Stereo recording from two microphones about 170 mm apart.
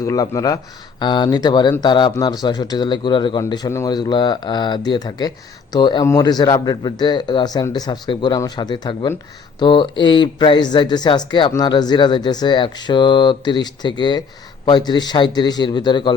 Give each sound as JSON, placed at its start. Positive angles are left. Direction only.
{"t": 0.0, "sound": "speech", "side_deg": 20}